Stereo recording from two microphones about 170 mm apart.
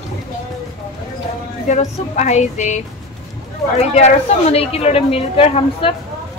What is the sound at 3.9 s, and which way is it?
A woman's voice, 40° left (ahead or behind).